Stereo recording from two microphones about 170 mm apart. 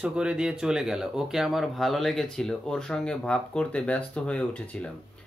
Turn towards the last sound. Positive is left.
turn(degrees=10)  # may be behind; listen again after turning